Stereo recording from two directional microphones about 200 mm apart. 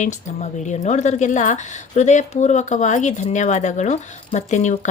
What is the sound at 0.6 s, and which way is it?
A woman's voice, 35° left (ahead or behind).